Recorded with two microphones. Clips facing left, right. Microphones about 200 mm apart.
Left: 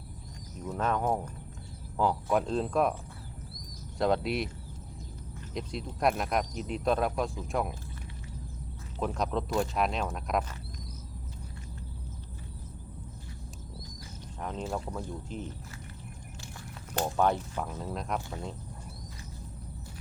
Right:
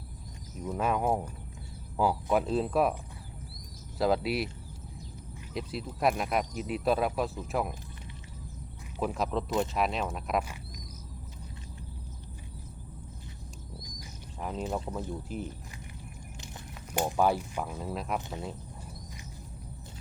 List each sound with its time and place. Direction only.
0.6 s speech: 10° right (ahead or behind)
3.9 s speech: 5° right (ahead or behind)
5.5 s speech: 5° right (ahead or behind)
9.0 s speech: 5° right (ahead or behind)
14.6 s speech: 20° right (ahead or behind)
14.8 s speech: 5° right (ahead or behind)
17.0 s speech: 10° right (ahead or behind)